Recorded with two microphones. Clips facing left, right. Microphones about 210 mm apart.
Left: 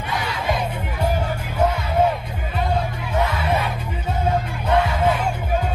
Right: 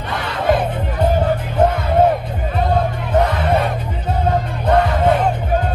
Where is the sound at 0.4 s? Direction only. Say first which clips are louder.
Right 10 dB; 50° right (ahead or behind).